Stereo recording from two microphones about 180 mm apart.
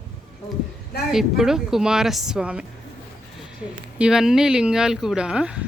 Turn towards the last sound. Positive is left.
turn(degrees=-5)  # may be behind; listen again after turning